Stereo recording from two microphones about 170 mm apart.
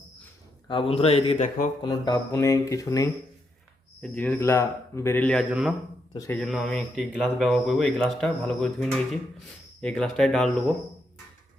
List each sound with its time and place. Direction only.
0.7 s a man's voice: 35° left (ahead or behind)
1.4 s speech: 45° left (ahead or behind)
1.8 s speech: 20° left (ahead or behind)
4.0 s speech: 10° left (ahead or behind)
5.5 s a man's voice: 5° right (ahead or behind)
6.1 s speech: 15° left (ahead or behind)
6.4 s speech: centre (ahead or behind)